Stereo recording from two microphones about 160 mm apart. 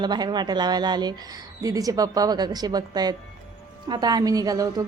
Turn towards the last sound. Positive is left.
turn(degrees=-25)  # may be behind; listen again after turning